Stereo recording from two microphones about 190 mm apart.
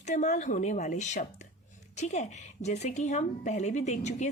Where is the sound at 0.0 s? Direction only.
40° left (ahead or behind).